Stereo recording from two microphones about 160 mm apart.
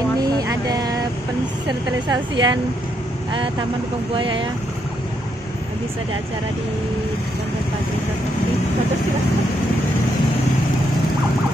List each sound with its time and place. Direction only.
0.2 s vehicle: 25° right (ahead or behind)
1.7 s a woman's voice: 25° right (ahead or behind)
4.1 s speech: 30° right (ahead or behind)